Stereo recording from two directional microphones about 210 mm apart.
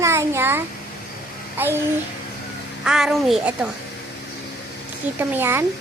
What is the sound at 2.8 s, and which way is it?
Speech, centre (ahead or behind).